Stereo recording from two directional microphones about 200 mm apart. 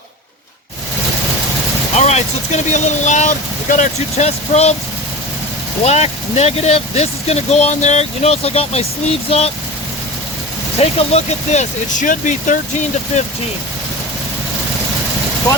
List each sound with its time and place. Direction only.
2.0 s speech: 35° left (ahead or behind)
5.8 s speech: 35° left (ahead or behind)
10.8 s speech: 30° left (ahead or behind)